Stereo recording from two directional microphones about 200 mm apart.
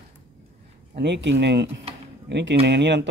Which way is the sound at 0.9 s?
60° right (ahead or behind).